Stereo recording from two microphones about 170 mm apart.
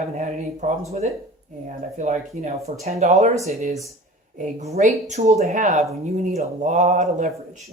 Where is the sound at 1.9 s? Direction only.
45° right (ahead or behind).